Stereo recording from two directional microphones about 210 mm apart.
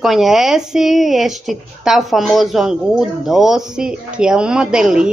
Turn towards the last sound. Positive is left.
turn(degrees=-5)  # may be behind; listen again after turning